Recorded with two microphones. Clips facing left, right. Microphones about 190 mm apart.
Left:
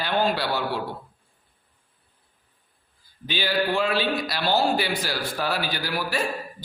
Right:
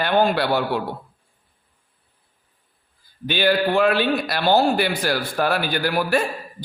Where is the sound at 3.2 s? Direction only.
60° right (ahead or behind).